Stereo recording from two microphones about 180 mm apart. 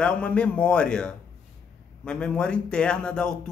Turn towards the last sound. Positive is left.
turn(degrees=5)  # may be behind; listen again after turning